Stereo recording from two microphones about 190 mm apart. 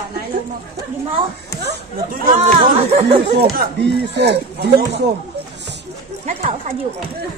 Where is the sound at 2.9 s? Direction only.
30° right (ahead or behind).